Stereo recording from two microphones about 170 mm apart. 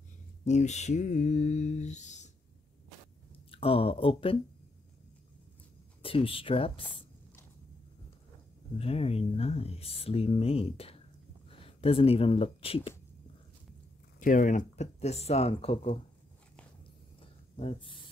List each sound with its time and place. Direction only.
0.5 s mantra: 45° left (ahead or behind)
3.5 s speech: 35° left (ahead or behind)
6.0 s speech: 30° left (ahead or behind)
8.7 s speech: 35° left (ahead or behind)
14.2 s speech: 50° left (ahead or behind); by 16.0 s 35° left (ahead or behind)
17.2 s a sound: 35° left (ahead or behind)